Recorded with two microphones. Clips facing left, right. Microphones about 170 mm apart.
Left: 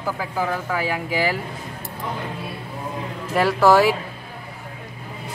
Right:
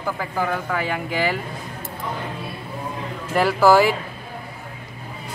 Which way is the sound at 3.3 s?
Centre (ahead or behind).